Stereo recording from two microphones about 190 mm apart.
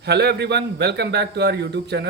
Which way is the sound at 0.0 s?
60° right (ahead or behind).